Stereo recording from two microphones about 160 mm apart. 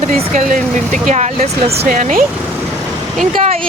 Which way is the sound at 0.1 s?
55° right (ahead or behind).